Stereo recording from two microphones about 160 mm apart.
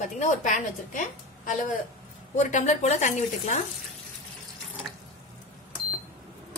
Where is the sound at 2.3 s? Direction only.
50° left (ahead or behind).